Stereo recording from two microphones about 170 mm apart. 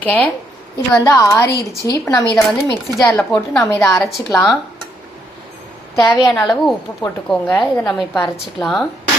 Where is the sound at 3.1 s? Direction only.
5° left (ahead or behind).